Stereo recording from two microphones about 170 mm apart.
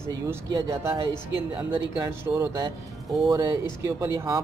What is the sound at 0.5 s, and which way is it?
Speech, 15° right (ahead or behind).